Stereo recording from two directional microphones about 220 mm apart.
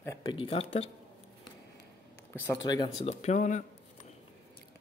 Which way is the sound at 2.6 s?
15° left (ahead or behind).